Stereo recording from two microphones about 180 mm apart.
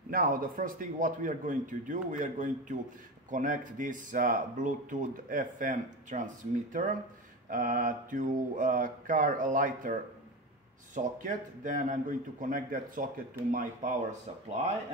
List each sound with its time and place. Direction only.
0.1 s speech: 55° right (ahead or behind)
11.0 s speech: 45° right (ahead or behind)